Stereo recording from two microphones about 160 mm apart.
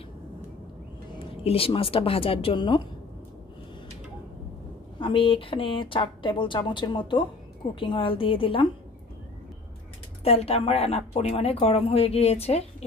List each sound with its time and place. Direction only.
1.2 s speech: 35° left (ahead or behind)
4.9 s speech: 30° left (ahead or behind)
10.2 s speech: 40° left (ahead or behind)